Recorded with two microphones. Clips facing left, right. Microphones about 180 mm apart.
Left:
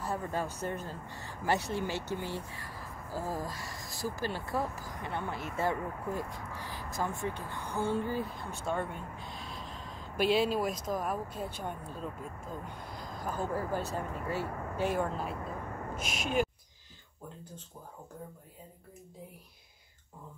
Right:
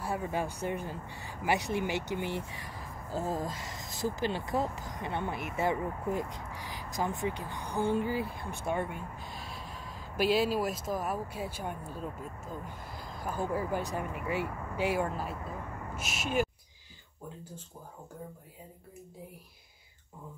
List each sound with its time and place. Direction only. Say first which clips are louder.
0.0 s speech: right 1 dB; 10° right (ahead or behind)